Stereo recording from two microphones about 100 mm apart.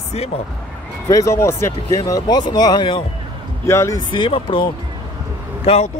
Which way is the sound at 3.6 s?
30° left (ahead or behind).